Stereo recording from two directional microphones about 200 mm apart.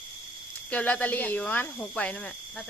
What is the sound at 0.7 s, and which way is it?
Speech, 5° left (ahead or behind).